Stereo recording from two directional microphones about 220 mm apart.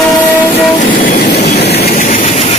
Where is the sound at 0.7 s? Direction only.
40° left (ahead or behind).